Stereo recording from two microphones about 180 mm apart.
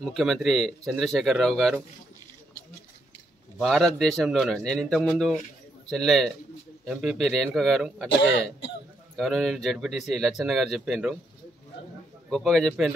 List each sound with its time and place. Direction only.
0.0 s speech: centre (ahead or behind)
3.5 s speech: centre (ahead or behind)
8.1 s speech: 80° left
9.1 s speech: centre (ahead or behind)
12.3 s speech: 5° left (ahead or behind)